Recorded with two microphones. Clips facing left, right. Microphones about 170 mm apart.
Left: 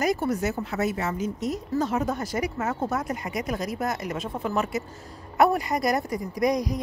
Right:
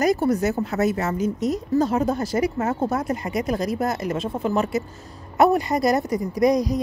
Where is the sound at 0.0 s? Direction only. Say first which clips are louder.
Right 5 dB; 40° right (ahead or behind).